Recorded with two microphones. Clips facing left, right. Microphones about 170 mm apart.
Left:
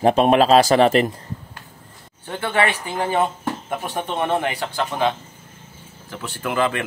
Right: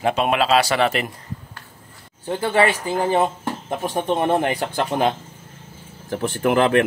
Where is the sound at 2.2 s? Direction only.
35° right (ahead or behind).